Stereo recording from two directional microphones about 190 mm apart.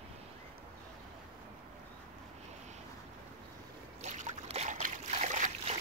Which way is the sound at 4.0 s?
40° right (ahead or behind).